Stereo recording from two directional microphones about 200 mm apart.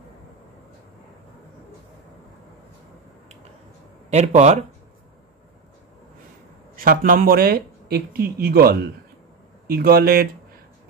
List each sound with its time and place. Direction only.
4.1 s speech: 35° right (ahead or behind)
6.7 s speech: 45° right (ahead or behind)